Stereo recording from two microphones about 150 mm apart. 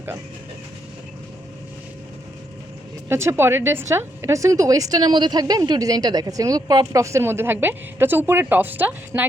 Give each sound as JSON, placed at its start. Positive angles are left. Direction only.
{"t": 3.1, "sound": "a woman's voice", "side_deg": -15}